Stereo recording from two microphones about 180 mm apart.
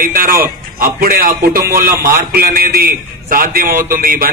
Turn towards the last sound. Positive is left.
turn(degrees=-50)  # may be behind; listen again after turning